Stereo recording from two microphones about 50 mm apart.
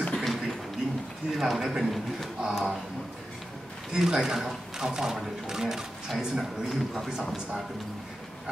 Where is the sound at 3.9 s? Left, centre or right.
Centre.